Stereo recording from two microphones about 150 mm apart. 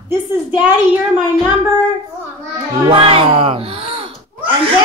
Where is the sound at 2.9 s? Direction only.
40° right (ahead or behind).